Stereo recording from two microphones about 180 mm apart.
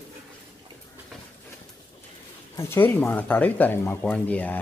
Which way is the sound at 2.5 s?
10° left (ahead or behind).